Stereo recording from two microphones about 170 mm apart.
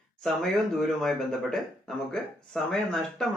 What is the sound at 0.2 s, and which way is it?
Speech, centre (ahead or behind).